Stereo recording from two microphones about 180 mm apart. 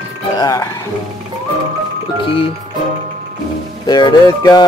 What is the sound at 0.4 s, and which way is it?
Speech, 20° left (ahead or behind).